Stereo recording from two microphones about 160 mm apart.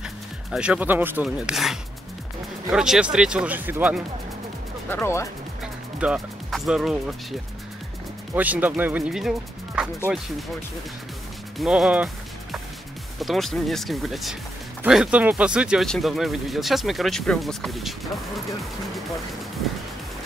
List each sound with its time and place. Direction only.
0.0 s speech: 5° right (ahead or behind)
4.8 s speech: 15° left (ahead or behind)
5.6 s speech: 5° right (ahead or behind)
8.4 s speech: 10° right (ahead or behind)
9.8 s music: 5° right (ahead or behind)
11.5 s speech: centre (ahead or behind)
13.2 s speech: centre (ahead or behind)